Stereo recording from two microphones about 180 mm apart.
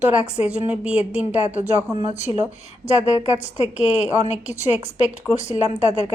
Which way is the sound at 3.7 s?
5° right (ahead or behind).